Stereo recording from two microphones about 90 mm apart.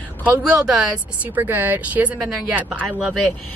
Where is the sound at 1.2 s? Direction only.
20° right (ahead or behind).